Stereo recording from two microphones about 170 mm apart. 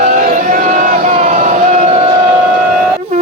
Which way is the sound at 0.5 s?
50° right (ahead or behind).